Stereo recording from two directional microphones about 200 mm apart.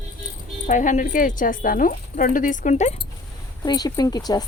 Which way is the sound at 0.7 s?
40° left (ahead or behind).